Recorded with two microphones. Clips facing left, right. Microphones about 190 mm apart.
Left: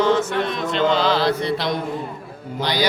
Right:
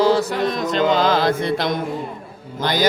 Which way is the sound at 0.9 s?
45° right (ahead or behind).